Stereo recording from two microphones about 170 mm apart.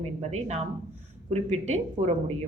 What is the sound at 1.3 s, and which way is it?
Speech, 40° right (ahead or behind).